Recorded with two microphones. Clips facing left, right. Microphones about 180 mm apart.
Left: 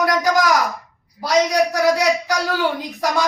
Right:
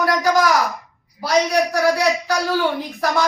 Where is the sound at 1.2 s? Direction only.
20° left (ahead or behind).